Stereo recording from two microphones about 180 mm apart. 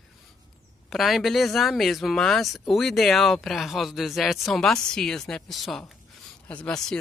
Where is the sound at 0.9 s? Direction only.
Centre (ahead or behind).